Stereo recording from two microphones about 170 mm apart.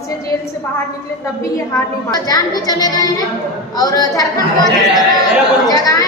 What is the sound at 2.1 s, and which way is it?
A woman's voice, 20° left (ahead or behind).